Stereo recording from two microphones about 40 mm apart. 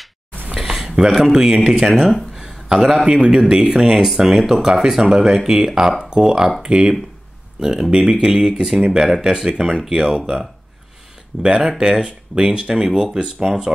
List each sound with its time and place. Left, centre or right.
0.6 s speech: centre
3.1 s speech: centre
4.0 s speech: centre; by 6.9 s right
7.9 s speech: right
8.6 s speech: centre
9.8 s speech: centre
11.4 s speech: centre